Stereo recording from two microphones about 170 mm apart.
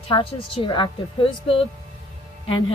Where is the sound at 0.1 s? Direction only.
30° left (ahead or behind).